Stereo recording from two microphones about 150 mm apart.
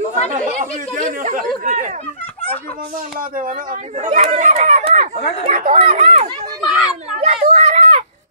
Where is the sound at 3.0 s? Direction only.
70° right (ahead or behind).